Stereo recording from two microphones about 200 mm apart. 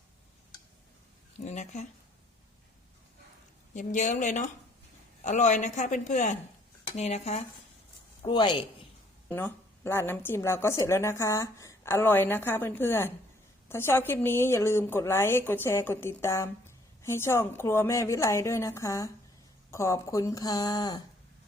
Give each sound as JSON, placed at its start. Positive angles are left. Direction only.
{"t": 1.5, "sound": "a man's voice", "side_deg": 35}
{"t": 3.8, "sound": "a man's voice", "side_deg": 40}
{"t": 9.3, "sound": "a woman's voice", "side_deg": 10}